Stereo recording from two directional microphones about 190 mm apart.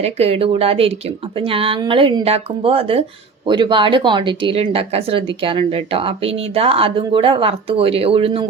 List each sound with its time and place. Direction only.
0.0 s speech: 30° right (ahead or behind)